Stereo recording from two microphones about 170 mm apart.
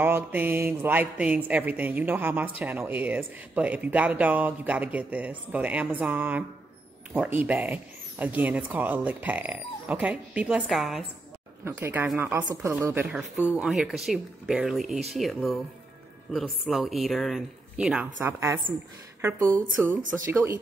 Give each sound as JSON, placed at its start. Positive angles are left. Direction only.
{"t": 0.0, "sound": "speech", "side_deg": -10}
{"t": 11.6, "sound": "speech", "side_deg": -15}
{"t": 16.6, "sound": "speech", "side_deg": 0}
{"t": 18.2, "sound": "speech", "side_deg": -15}
{"t": 19.8, "sound": "speech", "side_deg": -15}